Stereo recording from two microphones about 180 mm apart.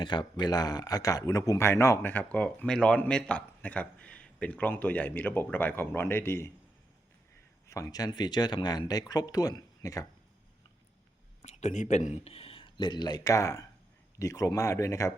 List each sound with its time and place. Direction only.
0.0 s speech: 25° left (ahead or behind)
7.7 s speech: 20° left (ahead or behind)
11.4 s speech: 40° left (ahead or behind); by 15.1 s 15° left (ahead or behind)